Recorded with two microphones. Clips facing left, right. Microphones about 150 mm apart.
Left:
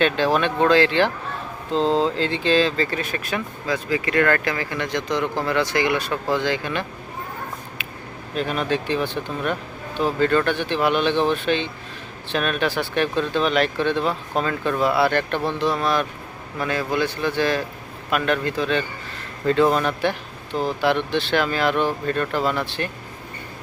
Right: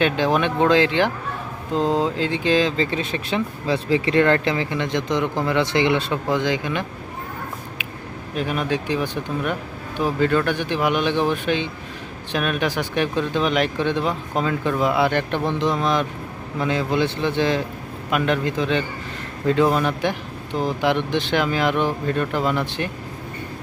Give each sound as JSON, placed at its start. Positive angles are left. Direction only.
{"t": 0.0, "sound": "speech", "side_deg": -15}
{"t": 7.8, "sound": "a sound", "side_deg": -15}
{"t": 8.4, "sound": "speech", "side_deg": -10}